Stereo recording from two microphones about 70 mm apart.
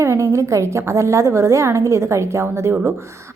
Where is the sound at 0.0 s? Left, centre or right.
Right.